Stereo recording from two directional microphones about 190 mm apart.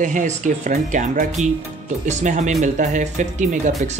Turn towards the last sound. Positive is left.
turn(degrees=-40)  # may be behind; listen again after turning